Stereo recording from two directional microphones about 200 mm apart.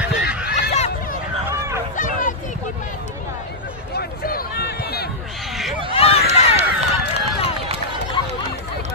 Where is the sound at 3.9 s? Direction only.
50° left (ahead or behind).